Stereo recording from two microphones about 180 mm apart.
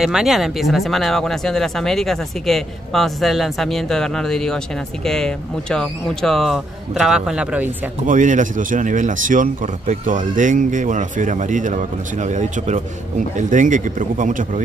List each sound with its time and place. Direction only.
0.0 s speech: 5° right (ahead or behind)
8.1 s speech: 45° right (ahead or behind)